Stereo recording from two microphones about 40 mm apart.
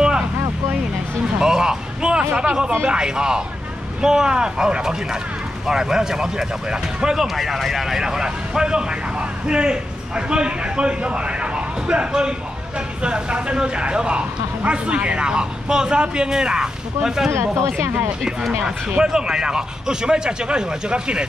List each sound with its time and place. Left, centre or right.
1.4 s a sound: centre
2.3 s a man's voice: right
7.2 s a man's voice: centre
17.8 s speech: right
18.9 s a man's voice: centre